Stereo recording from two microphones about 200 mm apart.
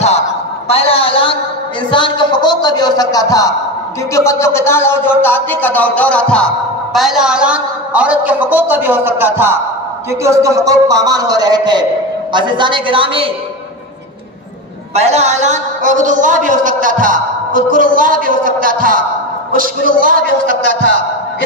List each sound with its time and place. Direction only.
0.7 s a woman's voice: 30° left (ahead or behind); by 5.1 s 10° left (ahead or behind)
5.2 s music: 10° left (ahead or behind); by 9.6 s 10° right (ahead or behind)
10.2 s a man's voice: 15° right (ahead or behind)
15.0 s a woman's voice: 35° right (ahead or behind)